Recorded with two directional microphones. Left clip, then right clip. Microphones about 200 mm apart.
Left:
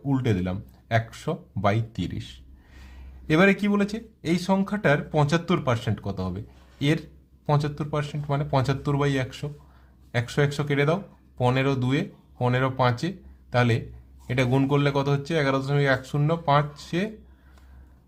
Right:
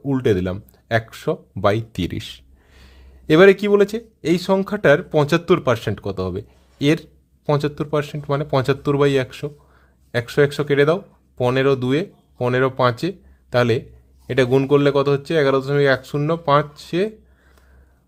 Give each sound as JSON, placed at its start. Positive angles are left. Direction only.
{"t": 0.1, "sound": "a man's voice", "side_deg": -35}